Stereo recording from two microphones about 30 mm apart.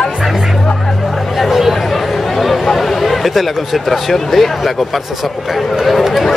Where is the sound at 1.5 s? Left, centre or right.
Centre.